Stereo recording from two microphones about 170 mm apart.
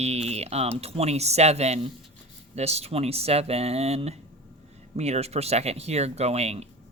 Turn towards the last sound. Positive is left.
turn(degrees=-40)  # may be behind; listen again after turning